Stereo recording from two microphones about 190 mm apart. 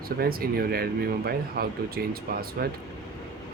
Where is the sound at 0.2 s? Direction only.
50° right (ahead or behind).